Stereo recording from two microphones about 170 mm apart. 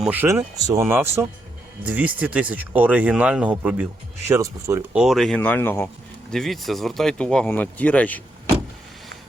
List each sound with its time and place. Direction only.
0.0 s speech: 10° right (ahead or behind)
4.3 s speech: 20° right (ahead or behind)
4.9 s speech: centre (ahead or behind)
6.3 s speech: centre (ahead or behind)